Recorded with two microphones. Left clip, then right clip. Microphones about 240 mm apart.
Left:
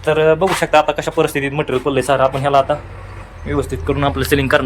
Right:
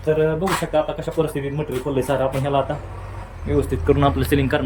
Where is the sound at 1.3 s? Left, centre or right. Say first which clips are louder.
Left 7 dB; centre.